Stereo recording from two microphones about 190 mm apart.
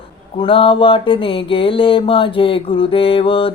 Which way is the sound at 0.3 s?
30° left (ahead or behind).